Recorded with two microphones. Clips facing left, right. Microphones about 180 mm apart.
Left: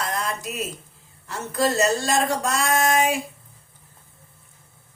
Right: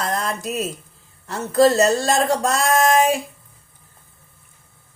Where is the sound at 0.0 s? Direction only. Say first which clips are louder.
Right 4 dB; 40° right (ahead or behind).